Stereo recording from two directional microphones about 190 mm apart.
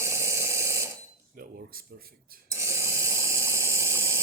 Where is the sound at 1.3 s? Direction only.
50° right (ahead or behind).